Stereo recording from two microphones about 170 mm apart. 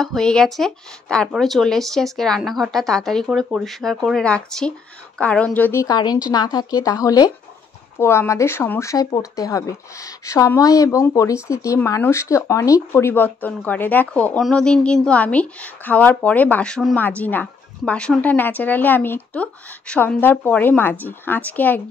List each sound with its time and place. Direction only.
0.0 s speech: 5° left (ahead or behind)